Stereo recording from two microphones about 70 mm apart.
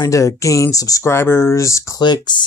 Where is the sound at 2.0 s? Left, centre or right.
Left.